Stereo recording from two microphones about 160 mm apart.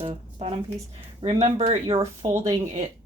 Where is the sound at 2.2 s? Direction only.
20° right (ahead or behind).